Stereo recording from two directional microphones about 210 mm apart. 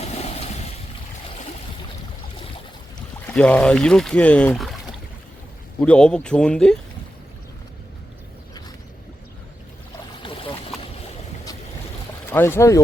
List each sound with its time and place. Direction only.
0.0 s a sound: 30° left (ahead or behind)
3.3 s speech: 5° left (ahead or behind)
5.8 s speech: 5° left (ahead or behind)
12.3 s speech: 10° left (ahead or behind)